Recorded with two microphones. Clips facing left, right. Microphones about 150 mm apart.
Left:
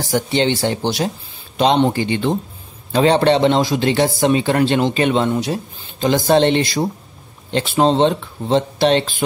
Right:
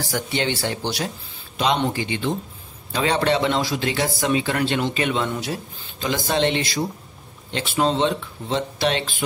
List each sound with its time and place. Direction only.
0.1 s speech: 25° left (ahead or behind)